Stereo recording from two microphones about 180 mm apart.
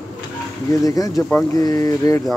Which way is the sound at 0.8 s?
20° left (ahead or behind).